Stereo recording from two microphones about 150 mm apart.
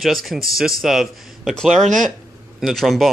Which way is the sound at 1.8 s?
60° right (ahead or behind).